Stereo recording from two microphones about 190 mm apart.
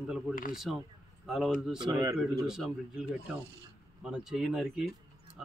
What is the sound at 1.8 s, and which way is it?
Speech, 20° right (ahead or behind).